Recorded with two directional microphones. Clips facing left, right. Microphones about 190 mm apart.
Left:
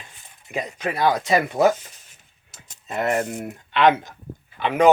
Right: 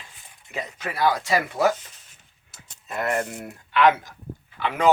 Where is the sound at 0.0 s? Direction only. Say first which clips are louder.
Left 2 dB; 20° left (ahead or behind).